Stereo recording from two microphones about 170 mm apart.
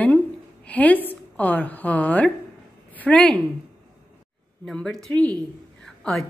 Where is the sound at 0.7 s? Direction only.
10° left (ahead or behind).